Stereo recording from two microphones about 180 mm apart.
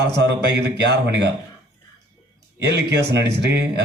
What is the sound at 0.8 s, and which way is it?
Speech, 70° right (ahead or behind).